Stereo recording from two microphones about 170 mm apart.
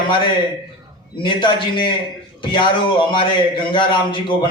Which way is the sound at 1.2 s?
30° left (ahead or behind).